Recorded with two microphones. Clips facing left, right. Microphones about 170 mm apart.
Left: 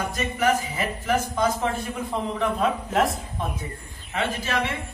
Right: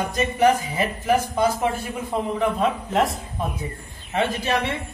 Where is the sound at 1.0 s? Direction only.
15° right (ahead or behind).